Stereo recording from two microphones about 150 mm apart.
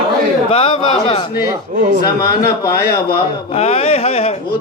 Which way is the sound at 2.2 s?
25° left (ahead or behind).